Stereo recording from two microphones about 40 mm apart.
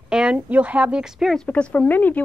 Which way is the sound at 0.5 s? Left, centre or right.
Right.